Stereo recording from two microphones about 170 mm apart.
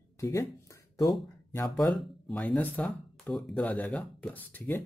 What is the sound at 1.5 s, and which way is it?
Speech, 15° left (ahead or behind).